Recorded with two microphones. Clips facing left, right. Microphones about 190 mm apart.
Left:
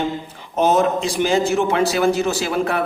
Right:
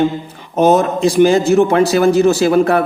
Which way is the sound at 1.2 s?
45° right (ahead or behind).